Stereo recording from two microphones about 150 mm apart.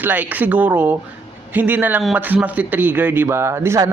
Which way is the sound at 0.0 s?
10° right (ahead or behind).